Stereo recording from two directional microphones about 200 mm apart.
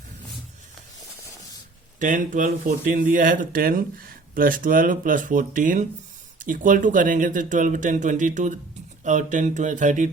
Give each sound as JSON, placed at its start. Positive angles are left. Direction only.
{"t": 2.0, "sound": "speech", "side_deg": -40}